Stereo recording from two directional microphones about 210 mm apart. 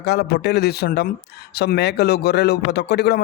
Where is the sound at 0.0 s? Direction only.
50° left (ahead or behind).